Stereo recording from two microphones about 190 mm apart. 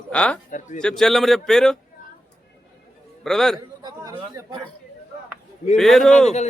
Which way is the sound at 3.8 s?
20° right (ahead or behind).